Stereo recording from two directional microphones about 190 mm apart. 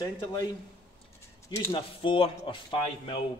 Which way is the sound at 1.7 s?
30° left (ahead or behind).